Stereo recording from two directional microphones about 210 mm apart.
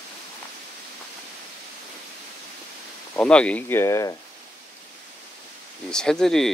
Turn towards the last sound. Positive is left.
turn(degrees=0)  # may be behind; listen again after turning